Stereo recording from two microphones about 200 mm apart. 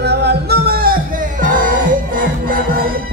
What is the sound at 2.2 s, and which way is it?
Music, 45° right (ahead or behind).